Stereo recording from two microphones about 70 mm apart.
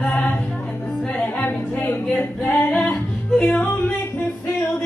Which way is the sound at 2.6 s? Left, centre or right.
Left.